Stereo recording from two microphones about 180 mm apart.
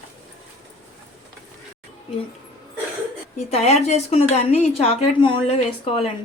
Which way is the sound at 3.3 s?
40° left (ahead or behind).